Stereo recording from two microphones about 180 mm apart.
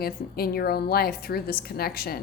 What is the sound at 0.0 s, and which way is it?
A woman's voice, 60° left (ahead or behind).